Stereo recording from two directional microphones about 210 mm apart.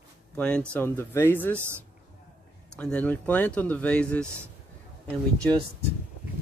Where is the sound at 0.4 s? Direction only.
5° left (ahead or behind).